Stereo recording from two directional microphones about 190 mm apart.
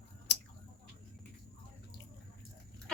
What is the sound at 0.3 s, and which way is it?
Scissors, 65° left (ahead or behind).